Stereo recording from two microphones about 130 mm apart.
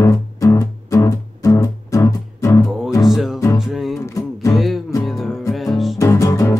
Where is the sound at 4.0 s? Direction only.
25° left (ahead or behind).